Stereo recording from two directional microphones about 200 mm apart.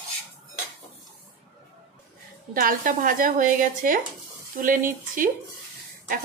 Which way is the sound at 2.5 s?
45° right (ahead or behind).